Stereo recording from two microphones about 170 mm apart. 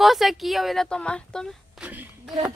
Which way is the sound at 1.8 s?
10° right (ahead or behind).